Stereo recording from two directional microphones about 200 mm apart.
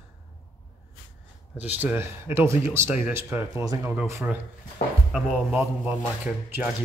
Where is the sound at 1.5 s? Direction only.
10° right (ahead or behind).